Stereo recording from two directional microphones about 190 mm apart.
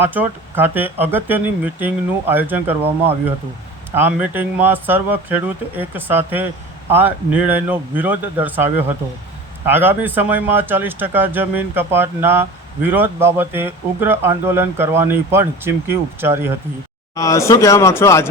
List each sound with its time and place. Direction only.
0.0 s speech: 10° right (ahead or behind)
3.9 s speech: 10° right (ahead or behind)
17.2 s speech: 15° left (ahead or behind)